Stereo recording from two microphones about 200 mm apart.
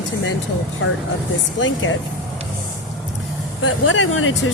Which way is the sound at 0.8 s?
85° left.